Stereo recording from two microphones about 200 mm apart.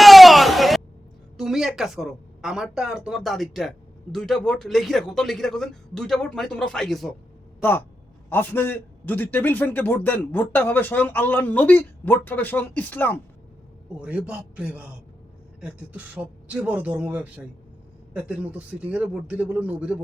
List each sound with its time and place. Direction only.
0.0 s a sound: centre (ahead or behind)
1.4 s a man's voice: centre (ahead or behind)
14.0 s speech: 5° right (ahead or behind)